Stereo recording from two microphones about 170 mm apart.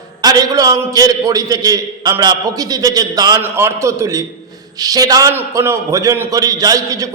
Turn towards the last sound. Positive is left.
turn(degrees=-20)  # may be behind; listen again after turning